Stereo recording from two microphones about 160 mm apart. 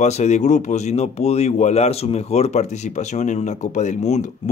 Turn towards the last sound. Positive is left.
turn(degrees=45)  # may be behind; listen again after turning